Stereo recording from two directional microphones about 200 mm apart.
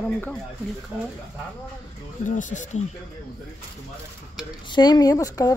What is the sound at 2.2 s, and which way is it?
Speech, 40° left (ahead or behind).